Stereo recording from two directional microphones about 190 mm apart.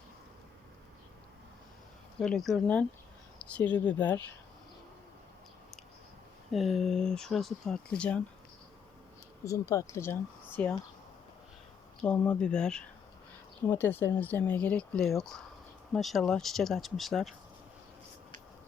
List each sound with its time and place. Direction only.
2.1 s speech: 5° left (ahead or behind)
6.5 s speech: centre (ahead or behind)
9.4 s speech: 15° left (ahead or behind)
11.9 s speech: 5° left (ahead or behind)